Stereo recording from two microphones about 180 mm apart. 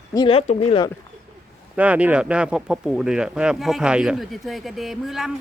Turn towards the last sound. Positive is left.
turn(degrees=0)  # may be behind; listen again after turning